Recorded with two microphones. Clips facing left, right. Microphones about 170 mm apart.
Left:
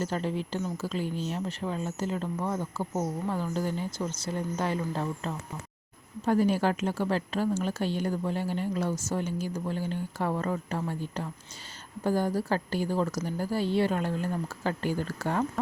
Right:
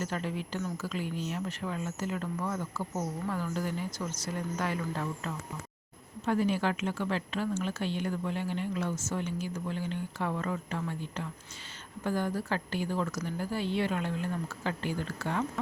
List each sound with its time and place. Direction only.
0.0 s speech: 30° left (ahead or behind)
6.2 s a woman's voice: 40° left (ahead or behind)